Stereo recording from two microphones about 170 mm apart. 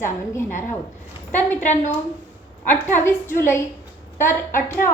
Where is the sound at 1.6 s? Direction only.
45° left (ahead or behind).